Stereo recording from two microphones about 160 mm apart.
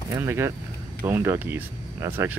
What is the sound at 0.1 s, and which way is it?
Speech, 15° right (ahead or behind).